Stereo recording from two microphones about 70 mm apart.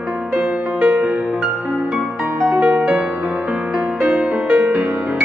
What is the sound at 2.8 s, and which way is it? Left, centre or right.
Music, centre.